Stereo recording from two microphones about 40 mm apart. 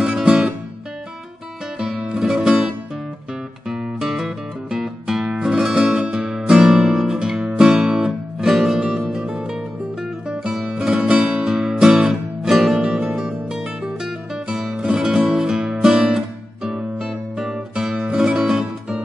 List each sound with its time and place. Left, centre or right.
0.0 s music: centre
1.8 s music: centre
7.3 s music: right
7.6 s music: centre
12.7 s music: right